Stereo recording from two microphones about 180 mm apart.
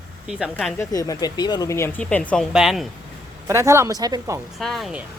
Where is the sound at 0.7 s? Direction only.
20° left (ahead or behind); by 2.9 s centre (ahead or behind).